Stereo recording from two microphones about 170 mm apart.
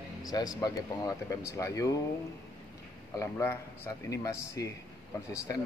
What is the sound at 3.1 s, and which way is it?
A man's voice, 15° left (ahead or behind).